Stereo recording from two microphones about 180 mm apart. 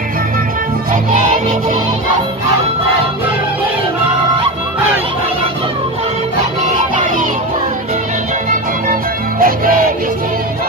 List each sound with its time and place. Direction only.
9.4 s music: 50° right (ahead or behind)